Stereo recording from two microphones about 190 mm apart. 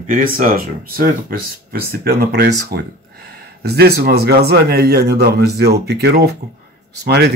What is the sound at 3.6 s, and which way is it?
Speech, 55° right (ahead or behind).